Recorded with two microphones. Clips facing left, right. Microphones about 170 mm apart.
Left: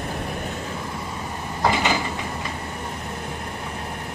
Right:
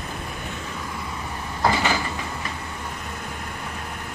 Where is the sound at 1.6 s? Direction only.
15° left (ahead or behind).